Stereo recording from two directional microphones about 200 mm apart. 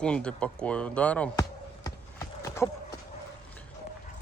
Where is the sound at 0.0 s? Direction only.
5° left (ahead or behind).